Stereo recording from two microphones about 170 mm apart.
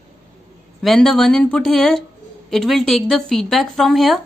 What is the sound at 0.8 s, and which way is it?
Speech, centre (ahead or behind).